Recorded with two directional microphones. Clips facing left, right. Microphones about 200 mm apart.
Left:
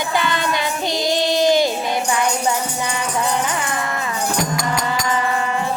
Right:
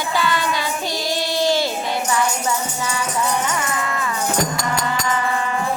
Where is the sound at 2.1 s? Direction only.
20° left (ahead or behind).